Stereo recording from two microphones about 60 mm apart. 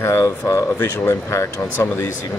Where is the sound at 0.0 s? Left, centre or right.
Left.